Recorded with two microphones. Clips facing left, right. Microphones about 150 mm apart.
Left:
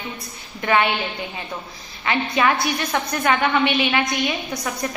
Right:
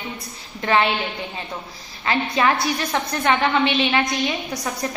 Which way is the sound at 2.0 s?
30° right (ahead or behind).